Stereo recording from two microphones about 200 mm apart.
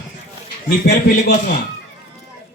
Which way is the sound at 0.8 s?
50° left (ahead or behind).